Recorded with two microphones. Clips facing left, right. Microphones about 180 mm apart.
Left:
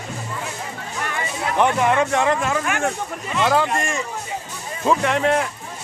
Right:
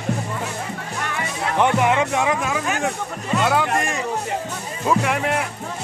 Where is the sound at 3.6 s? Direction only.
65° right (ahead or behind).